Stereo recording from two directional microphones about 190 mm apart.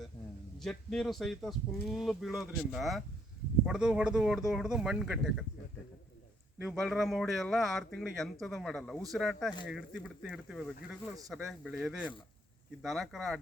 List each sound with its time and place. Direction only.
0.6 s a man's voice: centre (ahead or behind)
6.6 s a man's voice: centre (ahead or behind)